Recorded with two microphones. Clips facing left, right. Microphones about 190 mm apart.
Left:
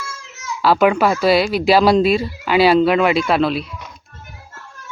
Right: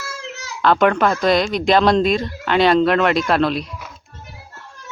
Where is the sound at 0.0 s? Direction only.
70° right (ahead or behind).